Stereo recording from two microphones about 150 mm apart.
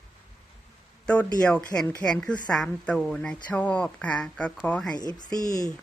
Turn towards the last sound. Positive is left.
turn(degrees=25)  # may be behind; listen again after turning